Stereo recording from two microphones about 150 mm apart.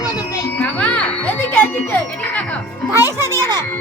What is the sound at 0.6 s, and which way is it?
Speech, 10° left (ahead or behind).